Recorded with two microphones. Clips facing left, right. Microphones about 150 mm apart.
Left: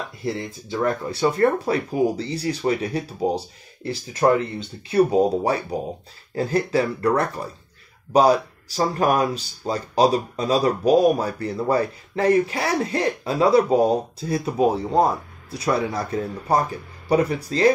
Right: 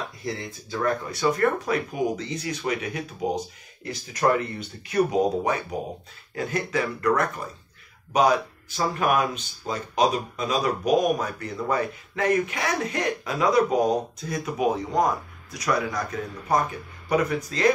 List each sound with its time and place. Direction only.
0.2 s speech: 30° left (ahead or behind)